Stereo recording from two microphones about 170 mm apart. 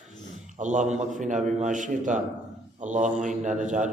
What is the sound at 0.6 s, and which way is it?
A man's voice, 45° right (ahead or behind).